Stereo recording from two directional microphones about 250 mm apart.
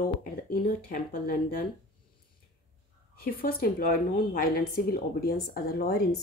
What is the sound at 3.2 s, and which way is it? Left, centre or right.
A woman's voice, left.